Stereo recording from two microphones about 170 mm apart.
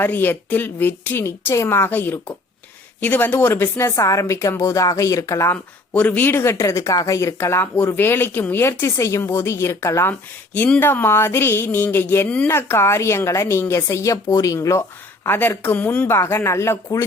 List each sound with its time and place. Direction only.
0.0 s speech: 10° left (ahead or behind)